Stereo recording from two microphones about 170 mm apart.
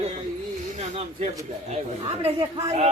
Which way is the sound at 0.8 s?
40° right (ahead or behind).